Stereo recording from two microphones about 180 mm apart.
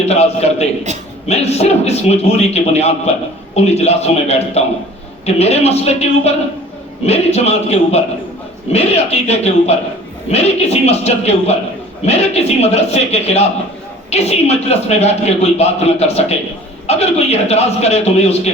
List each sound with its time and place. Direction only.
0.1 s a man's voice: 35° left (ahead or behind)